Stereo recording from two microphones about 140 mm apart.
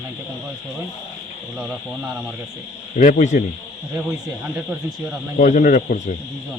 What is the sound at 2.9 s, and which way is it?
Speech, 60° left (ahead or behind).